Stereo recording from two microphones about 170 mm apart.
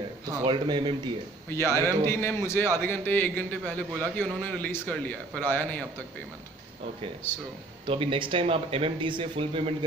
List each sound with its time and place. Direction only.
0.5 s speech: 25° right (ahead or behind)
1.5 s a man's voice: 15° left (ahead or behind)
7.2 s a man's voice: 10° left (ahead or behind)
7.8 s speech: 30° right (ahead or behind)